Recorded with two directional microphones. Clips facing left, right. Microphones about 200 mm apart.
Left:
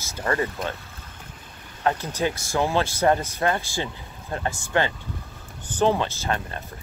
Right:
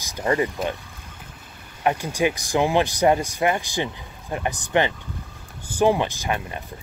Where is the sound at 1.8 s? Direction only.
15° right (ahead or behind).